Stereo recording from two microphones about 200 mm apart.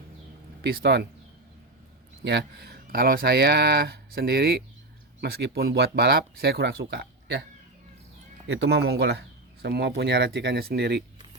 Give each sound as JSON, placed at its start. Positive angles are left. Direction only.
{"t": 0.6, "sound": "speech", "side_deg": -50}
{"t": 2.2, "sound": "speech", "side_deg": -55}
{"t": 8.4, "sound": "speech", "side_deg": -55}